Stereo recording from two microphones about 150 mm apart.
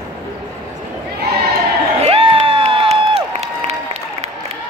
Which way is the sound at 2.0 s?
40° right (ahead or behind).